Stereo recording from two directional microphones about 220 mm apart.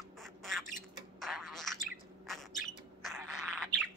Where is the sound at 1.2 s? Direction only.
Centre (ahead or behind).